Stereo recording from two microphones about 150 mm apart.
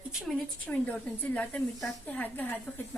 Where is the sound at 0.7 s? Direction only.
10° left (ahead or behind).